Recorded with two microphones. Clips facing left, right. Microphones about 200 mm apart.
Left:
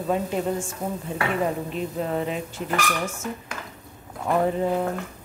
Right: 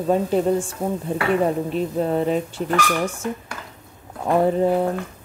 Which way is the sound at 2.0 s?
40° right (ahead or behind).